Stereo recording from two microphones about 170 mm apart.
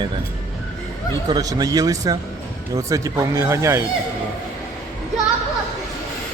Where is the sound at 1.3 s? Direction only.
20° right (ahead or behind).